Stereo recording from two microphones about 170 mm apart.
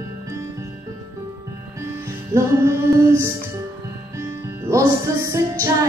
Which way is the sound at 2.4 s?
15° right (ahead or behind).